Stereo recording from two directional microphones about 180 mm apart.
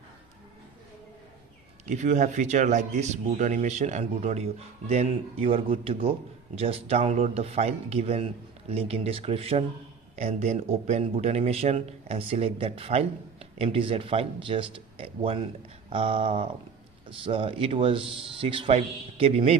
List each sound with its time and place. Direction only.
1.9 s speech: 45° right (ahead or behind)